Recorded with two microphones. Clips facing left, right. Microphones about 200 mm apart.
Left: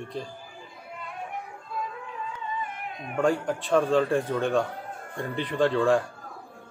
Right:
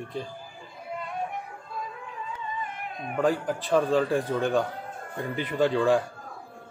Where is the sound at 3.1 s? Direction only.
Centre (ahead or behind).